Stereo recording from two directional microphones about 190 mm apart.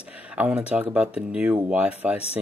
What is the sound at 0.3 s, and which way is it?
Speech, 5° right (ahead or behind).